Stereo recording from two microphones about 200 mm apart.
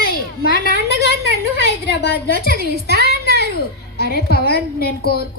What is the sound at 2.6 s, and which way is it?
Speech, 55° right (ahead or behind).